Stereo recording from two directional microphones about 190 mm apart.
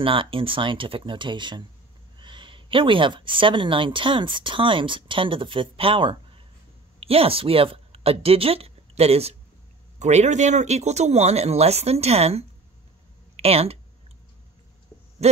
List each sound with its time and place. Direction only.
0.0 s a man's voice: 25° right (ahead or behind)